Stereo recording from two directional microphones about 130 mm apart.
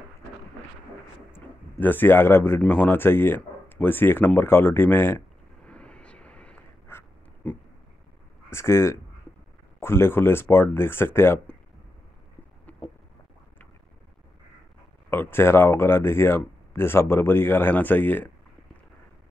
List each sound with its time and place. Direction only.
1.3 s speech: 15° left (ahead or behind)
5.7 s a sound: 10° left (ahead or behind)
8.5 s speech: 20° left (ahead or behind)
15.0 s speech: 15° left (ahead or behind)